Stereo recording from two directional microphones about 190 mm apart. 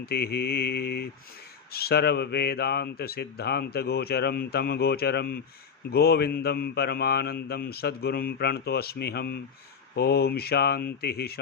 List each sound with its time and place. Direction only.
0.0 s speech: 55° left (ahead or behind)